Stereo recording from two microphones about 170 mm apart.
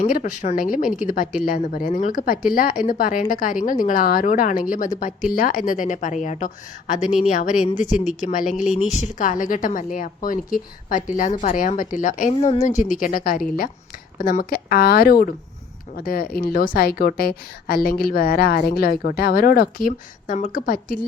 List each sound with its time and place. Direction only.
0.0 s a woman's voice: 50° left (ahead or behind)
12.3 s a woman's voice: 40° left (ahead or behind); by 21.0 s 55° left (ahead or behind)